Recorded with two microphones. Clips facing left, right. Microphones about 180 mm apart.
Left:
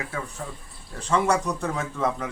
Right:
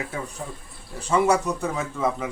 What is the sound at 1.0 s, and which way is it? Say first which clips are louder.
Speech: right 2 dB; 10° right (ahead or behind).